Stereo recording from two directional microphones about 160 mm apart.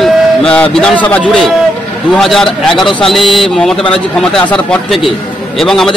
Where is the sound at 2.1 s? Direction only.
Centre (ahead or behind).